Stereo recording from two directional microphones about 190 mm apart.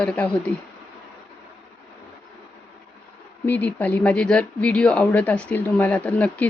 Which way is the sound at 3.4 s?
10° left (ahead or behind).